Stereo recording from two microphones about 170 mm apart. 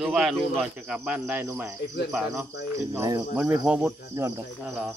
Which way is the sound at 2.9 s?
20° right (ahead or behind).